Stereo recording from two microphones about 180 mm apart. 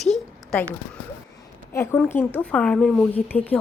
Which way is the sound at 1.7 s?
15° left (ahead or behind).